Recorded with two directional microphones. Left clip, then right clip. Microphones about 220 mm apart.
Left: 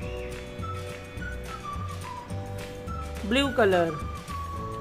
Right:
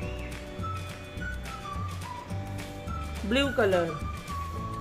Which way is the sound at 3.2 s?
15° left (ahead or behind).